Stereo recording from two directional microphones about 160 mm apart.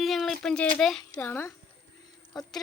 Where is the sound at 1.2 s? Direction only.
15° left (ahead or behind).